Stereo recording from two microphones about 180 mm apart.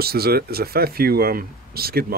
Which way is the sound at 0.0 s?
60° right (ahead or behind).